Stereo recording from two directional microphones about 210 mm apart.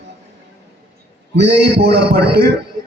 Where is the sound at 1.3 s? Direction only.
55° right (ahead or behind).